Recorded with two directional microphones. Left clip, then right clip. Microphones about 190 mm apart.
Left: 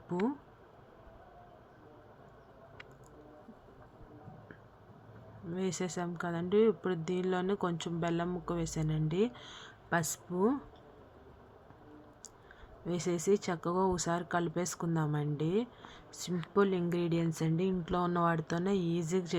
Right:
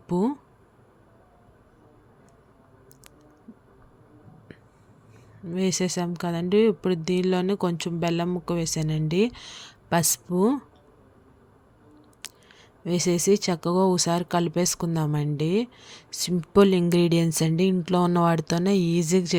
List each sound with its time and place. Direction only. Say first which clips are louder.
0.1 s speech: right 9 dB; 45° right (ahead or behind)
5.5 s speech: right 10 dB; 45° right (ahead or behind)
12.8 s speech: right 10 dB; 50° right (ahead or behind)